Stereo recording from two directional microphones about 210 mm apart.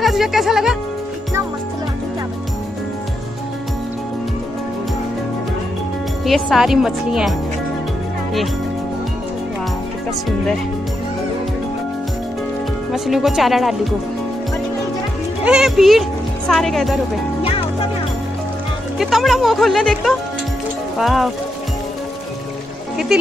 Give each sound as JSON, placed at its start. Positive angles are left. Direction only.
{"t": 0.0, "sound": "speech", "side_deg": 0}
{"t": 6.2, "sound": "speech", "side_deg": 0}
{"t": 12.9, "sound": "speech", "side_deg": 0}
{"t": 15.4, "sound": "speech", "side_deg": -5}
{"t": 17.4, "sound": "music", "side_deg": 25}
{"t": 18.9, "sound": "speech", "side_deg": 0}